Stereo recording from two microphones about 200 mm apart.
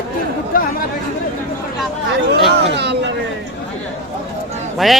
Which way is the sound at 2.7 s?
60° right (ahead or behind).